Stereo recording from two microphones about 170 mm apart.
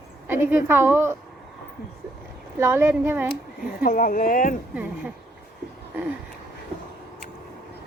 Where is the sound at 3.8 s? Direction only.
55° left (ahead or behind).